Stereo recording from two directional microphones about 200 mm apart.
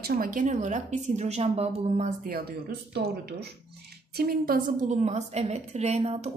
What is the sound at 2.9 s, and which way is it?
A woman's voice, 55° right (ahead or behind).